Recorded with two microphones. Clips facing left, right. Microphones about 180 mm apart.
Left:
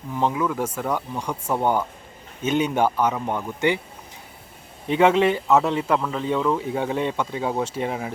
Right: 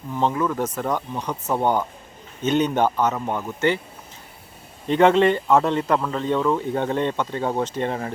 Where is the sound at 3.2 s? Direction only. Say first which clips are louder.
Even; 5° right (ahead or behind).